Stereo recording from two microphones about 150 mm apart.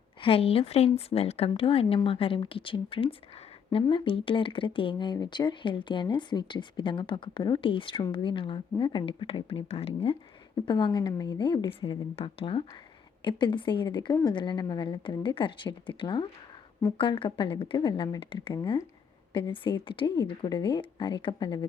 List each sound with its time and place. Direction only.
0.2 s speech: 40° left (ahead or behind)